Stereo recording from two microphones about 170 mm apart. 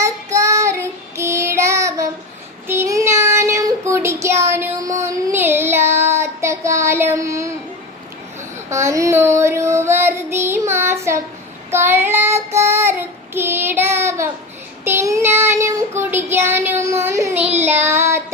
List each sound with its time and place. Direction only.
0.0 s child singing: 20° right (ahead or behind)
8.7 s child singing: 15° right (ahead or behind)